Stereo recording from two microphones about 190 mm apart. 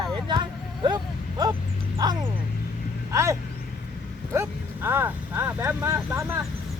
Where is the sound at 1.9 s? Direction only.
20° right (ahead or behind).